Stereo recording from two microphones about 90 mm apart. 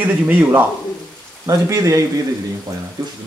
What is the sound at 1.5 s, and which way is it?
Speech, 35° right (ahead or behind).